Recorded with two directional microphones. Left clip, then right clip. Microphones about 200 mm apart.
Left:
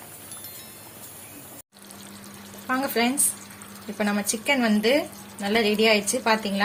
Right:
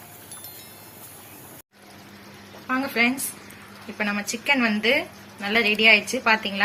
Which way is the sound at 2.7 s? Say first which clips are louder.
Right 2 dB; 50° left (ahead or behind).